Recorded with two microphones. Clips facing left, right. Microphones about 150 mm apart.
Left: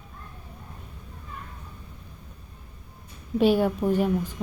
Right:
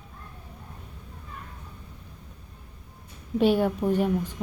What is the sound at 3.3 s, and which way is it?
Speech, 10° left (ahead or behind).